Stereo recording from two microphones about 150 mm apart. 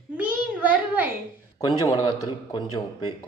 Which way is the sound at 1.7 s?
25° left (ahead or behind).